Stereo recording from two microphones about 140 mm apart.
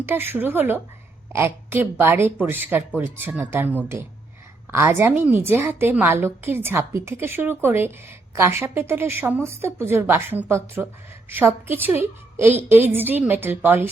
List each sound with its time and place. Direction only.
0.0 s a woman's voice: 15° right (ahead or behind)